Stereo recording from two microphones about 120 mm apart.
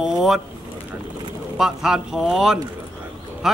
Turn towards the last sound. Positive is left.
turn(degrees=-5)  # may be behind; listen again after turning